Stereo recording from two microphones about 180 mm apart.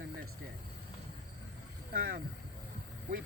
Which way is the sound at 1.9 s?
55° right (ahead or behind).